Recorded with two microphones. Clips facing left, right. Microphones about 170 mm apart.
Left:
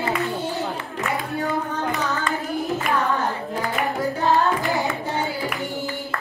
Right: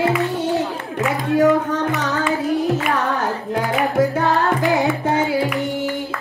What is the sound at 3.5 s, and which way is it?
Music, 90° right.